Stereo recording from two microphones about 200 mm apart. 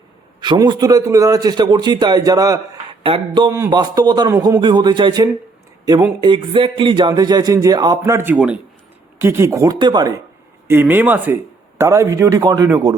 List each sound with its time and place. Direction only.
0.4 s a man's voice: 20° right (ahead or behind)
10.7 s a man's voice: 10° right (ahead or behind)